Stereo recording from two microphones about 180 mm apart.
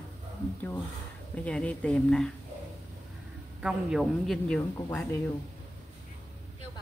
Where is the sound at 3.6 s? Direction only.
Centre (ahead or behind).